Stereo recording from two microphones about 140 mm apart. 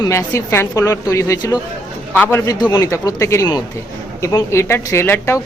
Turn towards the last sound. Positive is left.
turn(degrees=15)  # may be behind; listen again after turning